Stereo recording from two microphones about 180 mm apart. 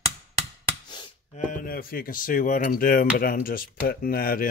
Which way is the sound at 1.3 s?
50° left (ahead or behind).